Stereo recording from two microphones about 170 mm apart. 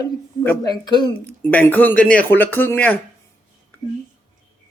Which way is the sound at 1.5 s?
10° left (ahead or behind).